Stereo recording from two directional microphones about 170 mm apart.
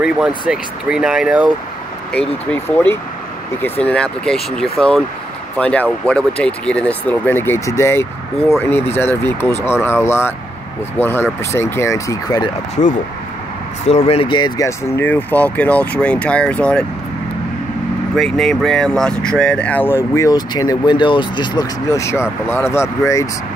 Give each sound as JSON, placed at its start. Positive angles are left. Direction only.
{"t": 0.5, "sound": "speech", "side_deg": -5}
{"t": 2.1, "sound": "speech", "side_deg": 10}
{"t": 3.8, "sound": "speech", "side_deg": 5}
{"t": 13.8, "sound": "speech", "side_deg": 40}
{"t": 18.1, "sound": "speech", "side_deg": 0}